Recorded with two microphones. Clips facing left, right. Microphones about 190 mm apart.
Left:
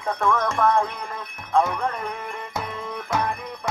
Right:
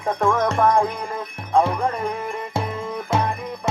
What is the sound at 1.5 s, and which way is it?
Music, 30° right (ahead or behind).